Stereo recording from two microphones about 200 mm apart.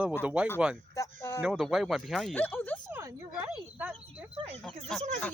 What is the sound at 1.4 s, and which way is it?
Speech, 5° right (ahead or behind).